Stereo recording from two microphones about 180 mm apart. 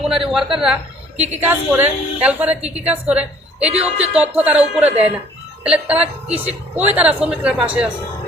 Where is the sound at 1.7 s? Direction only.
5° right (ahead or behind).